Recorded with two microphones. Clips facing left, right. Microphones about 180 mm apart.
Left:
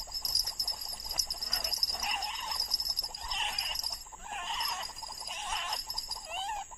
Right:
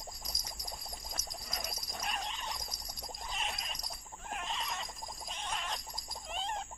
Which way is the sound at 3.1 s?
5° right (ahead or behind).